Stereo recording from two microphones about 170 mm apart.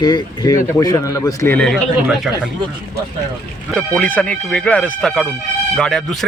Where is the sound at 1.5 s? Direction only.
5° left (ahead or behind).